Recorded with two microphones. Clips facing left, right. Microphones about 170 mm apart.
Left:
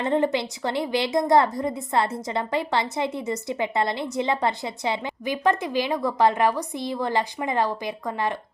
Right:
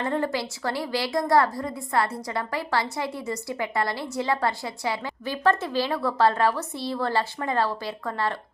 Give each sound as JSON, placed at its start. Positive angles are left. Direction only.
{"t": 0.0, "sound": "a woman's voice", "side_deg": 20}